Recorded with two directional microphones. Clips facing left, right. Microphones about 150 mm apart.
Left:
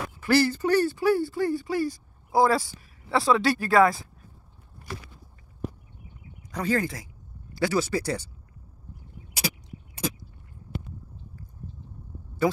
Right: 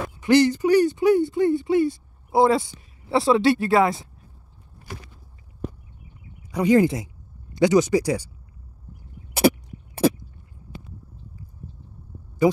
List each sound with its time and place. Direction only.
0.2 s speech: 20° right (ahead or behind)
6.5 s speech: 15° right (ahead or behind)
11.6 s a sound: 10° right (ahead or behind)